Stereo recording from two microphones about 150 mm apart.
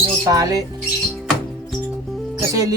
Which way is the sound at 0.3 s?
25° right (ahead or behind).